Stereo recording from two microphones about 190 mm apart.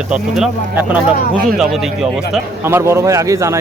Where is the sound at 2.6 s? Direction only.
15° right (ahead or behind).